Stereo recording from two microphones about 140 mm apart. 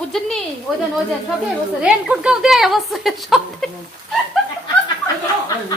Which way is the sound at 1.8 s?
5° right (ahead or behind).